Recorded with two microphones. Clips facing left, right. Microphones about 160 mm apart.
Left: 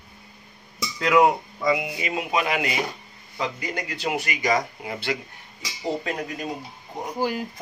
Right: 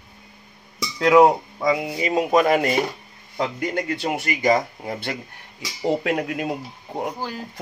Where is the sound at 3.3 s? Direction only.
55° right (ahead or behind).